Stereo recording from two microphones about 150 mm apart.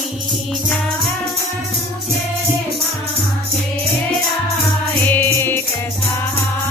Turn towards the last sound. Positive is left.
turn(degrees=15)  # may be behind; listen again after turning